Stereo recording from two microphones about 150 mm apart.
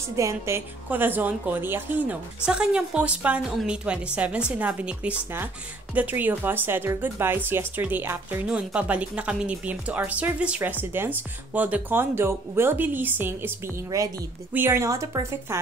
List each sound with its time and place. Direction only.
0.1 s speech: 20° right (ahead or behind)